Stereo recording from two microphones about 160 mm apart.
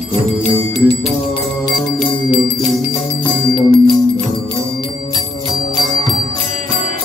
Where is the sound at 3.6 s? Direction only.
30° right (ahead or behind).